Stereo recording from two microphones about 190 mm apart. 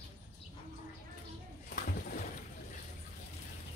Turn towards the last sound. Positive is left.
turn(degrees=45)  # may be behind; listen again after turning